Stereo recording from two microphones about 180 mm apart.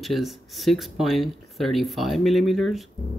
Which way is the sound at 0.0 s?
Centre (ahead or behind).